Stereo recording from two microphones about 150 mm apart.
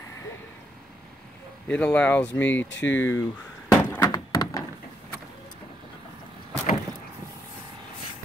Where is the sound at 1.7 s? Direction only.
10° left (ahead or behind).